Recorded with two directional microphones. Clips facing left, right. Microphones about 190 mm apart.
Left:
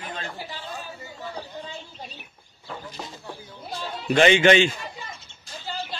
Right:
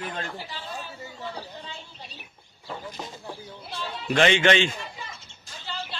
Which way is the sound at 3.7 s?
45° left (ahead or behind).